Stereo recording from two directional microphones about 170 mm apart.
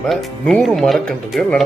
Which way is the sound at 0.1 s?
Centre (ahead or behind).